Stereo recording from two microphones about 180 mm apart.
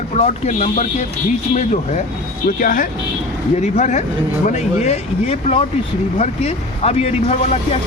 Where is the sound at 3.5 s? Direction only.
40° left (ahead or behind).